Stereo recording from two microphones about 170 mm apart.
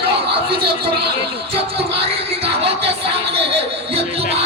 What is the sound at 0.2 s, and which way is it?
Speech, 30° right (ahead or behind).